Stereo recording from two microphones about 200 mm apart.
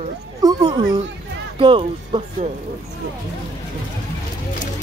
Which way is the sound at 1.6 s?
25° right (ahead or behind).